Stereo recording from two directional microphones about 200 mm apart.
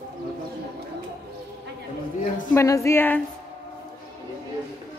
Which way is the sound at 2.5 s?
15° left (ahead or behind).